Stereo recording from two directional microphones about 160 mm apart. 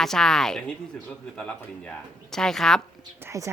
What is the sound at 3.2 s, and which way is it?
Speech, 20° right (ahead or behind).